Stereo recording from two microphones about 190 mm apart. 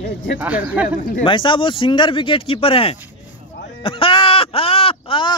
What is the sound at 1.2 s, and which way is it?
Speech, 25° left (ahead or behind).